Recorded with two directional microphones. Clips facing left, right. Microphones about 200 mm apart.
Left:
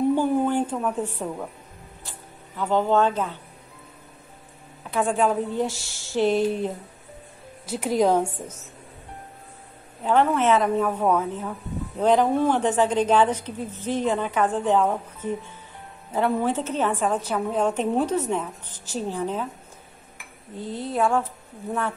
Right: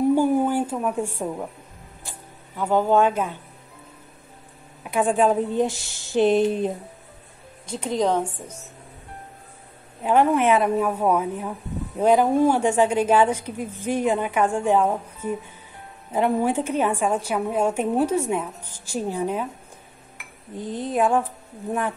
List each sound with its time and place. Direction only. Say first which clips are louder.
0.1 s a sound: right 2 dB; 10° right (ahead or behind)
2.0 s speech: right 3 dB; 10° right (ahead or behind)
4.9 s speech: right 3 dB; 15° right (ahead or behind)
7.6 s a woman's voice: left 2 dB; 5° left (ahead or behind)
10.0 s a woman's voice: right 2 dB; 10° right (ahead or behind)
20.5 s a woman's voice: right 2 dB; 15° right (ahead or behind)